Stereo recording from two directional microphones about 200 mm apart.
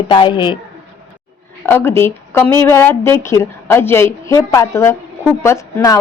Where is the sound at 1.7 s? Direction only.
10° left (ahead or behind).